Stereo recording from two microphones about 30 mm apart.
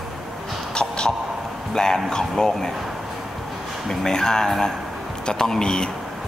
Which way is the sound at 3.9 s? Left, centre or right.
Centre.